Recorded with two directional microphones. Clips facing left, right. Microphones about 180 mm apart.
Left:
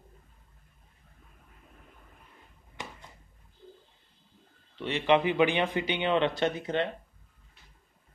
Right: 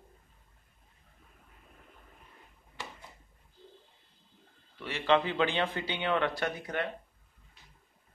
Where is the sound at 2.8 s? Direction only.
20° left (ahead or behind).